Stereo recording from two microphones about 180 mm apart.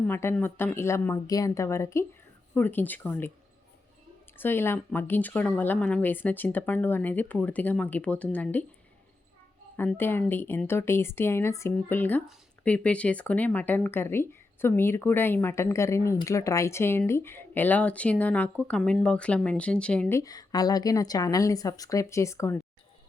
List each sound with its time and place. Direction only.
0.0 s speech: 15° left (ahead or behind)
4.4 s speech: 10° left (ahead or behind)
9.7 s speech: 10° left (ahead or behind)
20.1 s a woman's voice: 20° left (ahead or behind)